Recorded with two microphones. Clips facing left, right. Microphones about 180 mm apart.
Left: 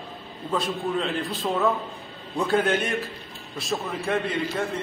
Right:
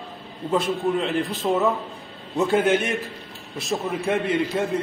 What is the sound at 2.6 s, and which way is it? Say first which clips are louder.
A man's voice: right 3 dB; 20° right (ahead or behind).